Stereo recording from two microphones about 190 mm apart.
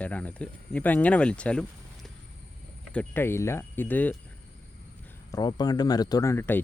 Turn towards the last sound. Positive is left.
turn(degrees=10)  # may be behind; listen again after turning